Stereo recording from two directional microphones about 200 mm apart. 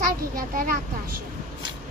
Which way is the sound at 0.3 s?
45° right (ahead or behind).